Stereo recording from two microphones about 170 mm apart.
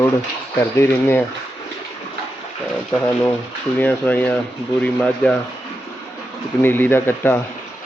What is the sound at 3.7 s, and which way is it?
Speech, 10° left (ahead or behind).